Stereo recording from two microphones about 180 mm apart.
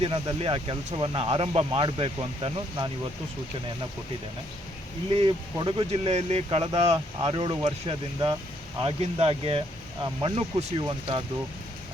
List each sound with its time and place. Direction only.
0.0 s speech: 30° right (ahead or behind)
5.1 s speech: 30° right (ahead or behind)